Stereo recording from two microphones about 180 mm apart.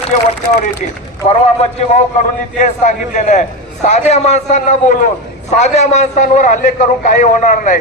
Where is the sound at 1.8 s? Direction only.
40° left (ahead or behind).